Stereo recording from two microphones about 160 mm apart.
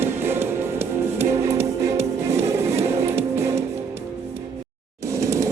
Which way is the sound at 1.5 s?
40° right (ahead or behind).